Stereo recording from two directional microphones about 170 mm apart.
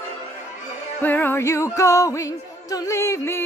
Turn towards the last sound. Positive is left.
turn(degrees=15)  # may be behind; listen again after turning